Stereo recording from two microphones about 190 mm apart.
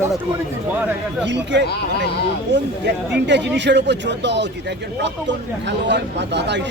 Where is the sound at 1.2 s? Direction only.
70° right (ahead or behind).